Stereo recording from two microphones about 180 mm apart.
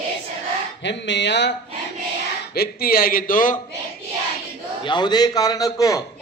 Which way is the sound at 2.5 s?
60° left (ahead or behind).